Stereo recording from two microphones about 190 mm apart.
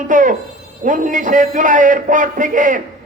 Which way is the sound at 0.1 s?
45° right (ahead or behind).